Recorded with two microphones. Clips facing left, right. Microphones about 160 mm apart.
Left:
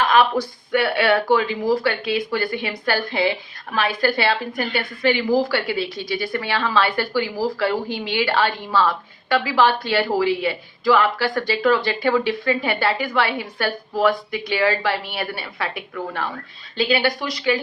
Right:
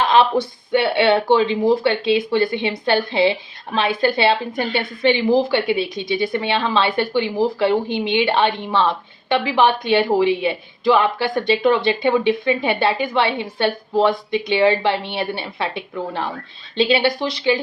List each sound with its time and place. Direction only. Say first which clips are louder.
0.0 s speech: right 2 dB; 25° right (ahead or behind)